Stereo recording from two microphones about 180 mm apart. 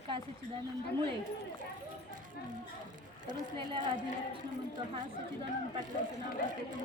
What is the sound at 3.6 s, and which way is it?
Speech, 25° right (ahead or behind).